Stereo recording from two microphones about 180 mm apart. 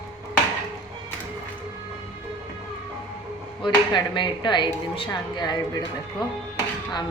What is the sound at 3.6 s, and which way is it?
Speech, 25° left (ahead or behind).